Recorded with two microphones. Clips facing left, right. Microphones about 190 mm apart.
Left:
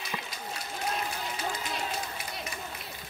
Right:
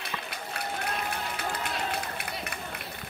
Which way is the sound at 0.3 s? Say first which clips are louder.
Right 3 dB; 60° right (ahead or behind).